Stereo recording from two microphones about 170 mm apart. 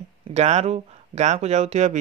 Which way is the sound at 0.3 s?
40° right (ahead or behind).